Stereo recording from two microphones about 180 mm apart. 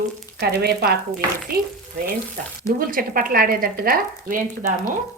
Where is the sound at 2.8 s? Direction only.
50° right (ahead or behind).